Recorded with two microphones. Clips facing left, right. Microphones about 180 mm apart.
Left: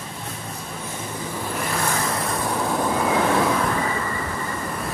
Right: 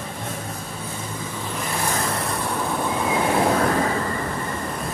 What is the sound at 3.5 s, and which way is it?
Train, 45° right (ahead or behind).